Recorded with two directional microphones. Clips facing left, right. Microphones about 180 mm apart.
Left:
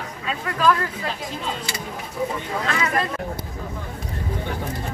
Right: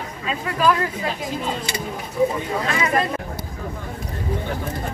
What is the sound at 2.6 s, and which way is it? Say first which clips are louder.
Speech: right 2 dB; 15° right (ahead or behind).